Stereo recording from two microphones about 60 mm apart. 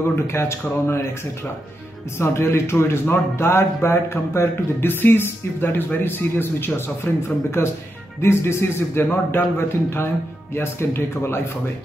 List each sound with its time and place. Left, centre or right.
0.1 s a man's voice: left
2.1 s a man's voice: left